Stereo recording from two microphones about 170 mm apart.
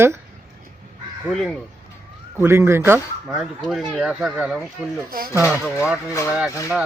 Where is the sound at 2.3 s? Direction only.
15° right (ahead or behind).